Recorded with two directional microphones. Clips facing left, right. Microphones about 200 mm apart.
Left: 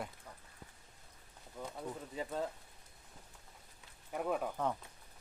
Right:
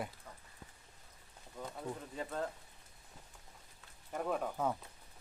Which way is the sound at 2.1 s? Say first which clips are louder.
Left 2 dB; 10° left (ahead or behind).